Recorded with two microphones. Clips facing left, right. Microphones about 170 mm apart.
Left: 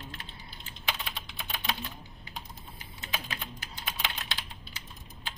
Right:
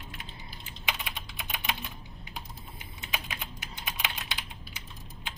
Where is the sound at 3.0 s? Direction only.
15° right (ahead or behind).